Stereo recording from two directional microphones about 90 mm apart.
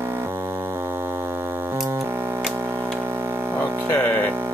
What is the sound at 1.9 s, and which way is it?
Music, 30° right (ahead or behind).